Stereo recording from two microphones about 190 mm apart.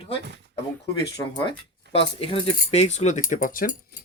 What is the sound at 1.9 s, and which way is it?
Speech, 30° left (ahead or behind).